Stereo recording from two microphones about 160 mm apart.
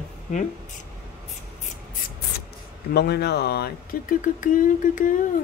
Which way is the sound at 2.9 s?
90° left.